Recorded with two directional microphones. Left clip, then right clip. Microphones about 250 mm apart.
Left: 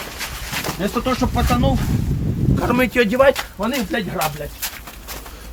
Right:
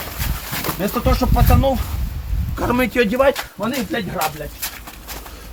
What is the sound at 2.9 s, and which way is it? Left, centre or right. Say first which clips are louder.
Speech: left 2 dB; centre.